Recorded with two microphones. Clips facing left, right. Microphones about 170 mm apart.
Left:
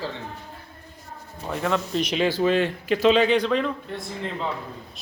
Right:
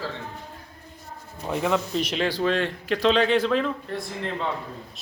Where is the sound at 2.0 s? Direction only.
Centre (ahead or behind).